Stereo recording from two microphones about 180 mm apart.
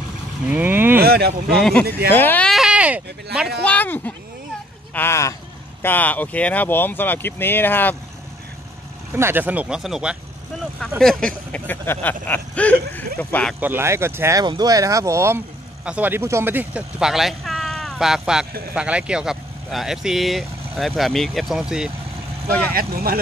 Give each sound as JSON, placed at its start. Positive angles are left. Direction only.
{"t": 0.5, "sound": "speech", "side_deg": -10}
{"t": 1.0, "sound": "a sound", "side_deg": -60}
{"t": 1.5, "sound": "speech", "side_deg": 0}
{"t": 3.6, "sound": "speech", "side_deg": 10}
{"t": 9.1, "sound": "speech", "side_deg": -10}
{"t": 13.6, "sound": "speech", "side_deg": -10}
{"t": 22.8, "sound": "speech", "side_deg": -55}